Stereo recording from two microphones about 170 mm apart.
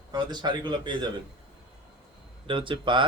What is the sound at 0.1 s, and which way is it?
Speech, 25° right (ahead or behind).